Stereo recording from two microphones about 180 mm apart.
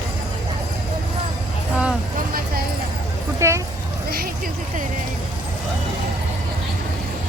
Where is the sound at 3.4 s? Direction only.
15° right (ahead or behind).